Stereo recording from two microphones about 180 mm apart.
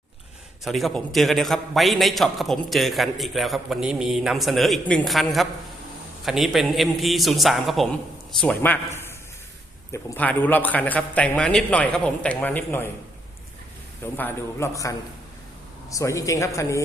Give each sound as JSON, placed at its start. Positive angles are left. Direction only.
{"t": 0.6, "sound": "a man's voice", "side_deg": 0}
{"t": 14.0, "sound": "a man's voice", "side_deg": 10}